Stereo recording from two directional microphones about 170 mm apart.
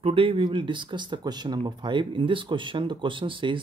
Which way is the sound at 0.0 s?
35° right (ahead or behind).